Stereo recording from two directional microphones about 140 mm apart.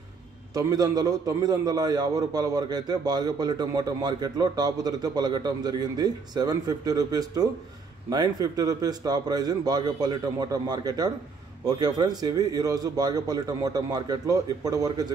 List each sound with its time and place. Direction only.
0.6 s a man's voice: 25° right (ahead or behind)